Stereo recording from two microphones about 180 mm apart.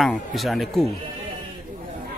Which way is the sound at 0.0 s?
Centre (ahead or behind).